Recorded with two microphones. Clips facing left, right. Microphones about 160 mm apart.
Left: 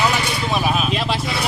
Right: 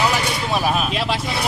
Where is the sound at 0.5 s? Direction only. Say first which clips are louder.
Even; 5° right (ahead or behind).